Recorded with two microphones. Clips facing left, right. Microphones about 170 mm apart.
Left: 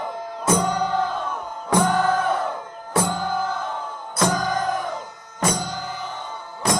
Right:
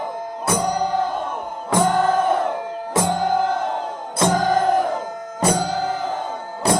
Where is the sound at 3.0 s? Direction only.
65° right (ahead or behind).